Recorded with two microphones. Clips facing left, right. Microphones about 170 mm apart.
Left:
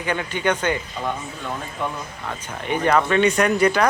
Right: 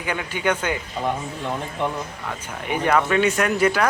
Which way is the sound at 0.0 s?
10° right (ahead or behind).